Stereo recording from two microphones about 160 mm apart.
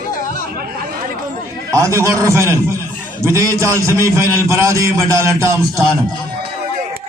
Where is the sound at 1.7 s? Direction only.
20° right (ahead or behind).